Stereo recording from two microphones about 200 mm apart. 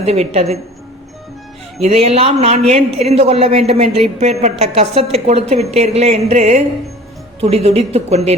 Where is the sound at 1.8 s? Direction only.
30° right (ahead or behind).